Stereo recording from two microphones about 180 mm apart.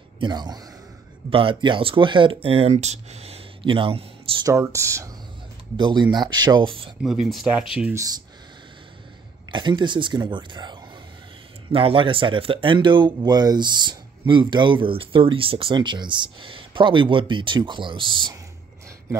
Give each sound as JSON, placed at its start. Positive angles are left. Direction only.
{"t": 0.2, "sound": "speech", "side_deg": -25}
{"t": 4.5, "sound": "speech", "side_deg": -15}
{"t": 7.0, "sound": "speech", "side_deg": 0}
{"t": 7.7, "sound": "speech", "side_deg": -10}
{"t": 9.5, "sound": "speech", "side_deg": -25}